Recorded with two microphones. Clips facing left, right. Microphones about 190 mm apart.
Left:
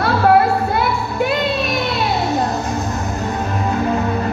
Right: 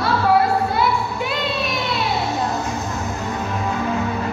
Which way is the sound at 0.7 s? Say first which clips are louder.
Left 1 dB; 55° left (ahead or behind).